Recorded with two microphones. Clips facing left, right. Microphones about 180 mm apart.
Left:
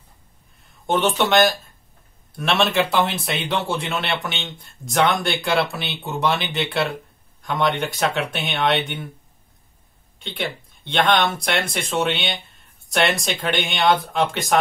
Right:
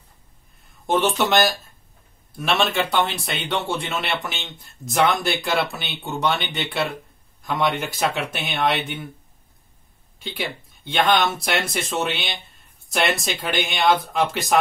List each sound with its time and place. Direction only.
0.8 s a man's voice: centre (ahead or behind)
10.1 s a man's voice: 5° right (ahead or behind)